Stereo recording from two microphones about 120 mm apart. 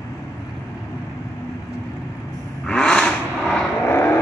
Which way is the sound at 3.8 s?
20° left (ahead or behind).